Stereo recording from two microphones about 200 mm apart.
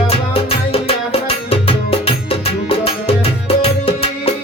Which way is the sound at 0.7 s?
30° left (ahead or behind).